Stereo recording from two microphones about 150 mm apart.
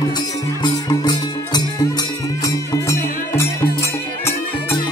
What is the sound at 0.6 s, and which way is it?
Music, 30° left (ahead or behind).